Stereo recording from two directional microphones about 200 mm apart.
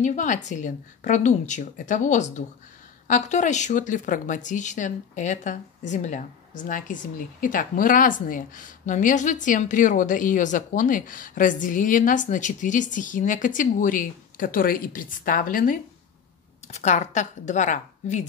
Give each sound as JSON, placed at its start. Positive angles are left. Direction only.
{"t": 0.0, "sound": "speech", "side_deg": 40}